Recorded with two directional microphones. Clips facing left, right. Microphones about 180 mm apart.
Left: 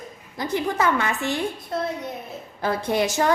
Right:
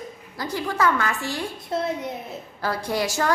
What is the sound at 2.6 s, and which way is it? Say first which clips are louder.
Speech: left 3 dB; 20° left (ahead or behind).